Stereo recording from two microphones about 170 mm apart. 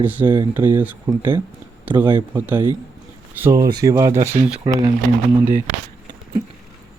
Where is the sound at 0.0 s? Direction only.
10° right (ahead or behind).